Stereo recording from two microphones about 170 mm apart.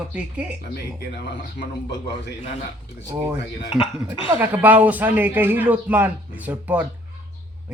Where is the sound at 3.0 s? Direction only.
15° right (ahead or behind).